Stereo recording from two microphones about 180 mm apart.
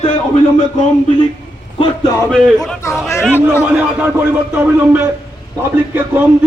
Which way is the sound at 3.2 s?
10° right (ahead or behind).